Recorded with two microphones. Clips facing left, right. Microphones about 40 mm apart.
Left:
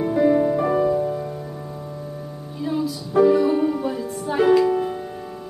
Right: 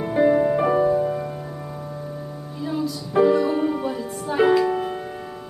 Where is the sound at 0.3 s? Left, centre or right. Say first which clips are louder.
Even; right.